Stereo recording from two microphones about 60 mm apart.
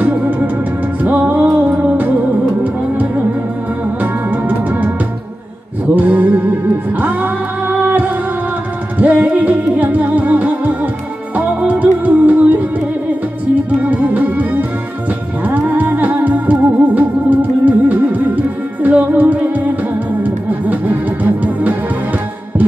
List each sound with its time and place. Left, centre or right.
0.0 s organ: right
1.0 s music: right
5.9 s music: right
13.7 s music: right
15.4 s organ: right
19.1 s music: right
20.2 s organ: right